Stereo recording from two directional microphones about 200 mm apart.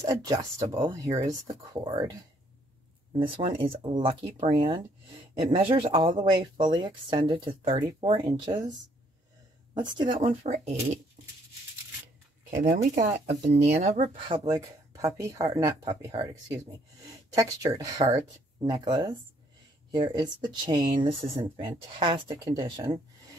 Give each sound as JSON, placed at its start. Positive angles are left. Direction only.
{"t": 0.0, "sound": "speech", "side_deg": -15}
{"t": 9.8, "sound": "speech", "side_deg": -25}
{"t": 12.4, "sound": "speech", "side_deg": -40}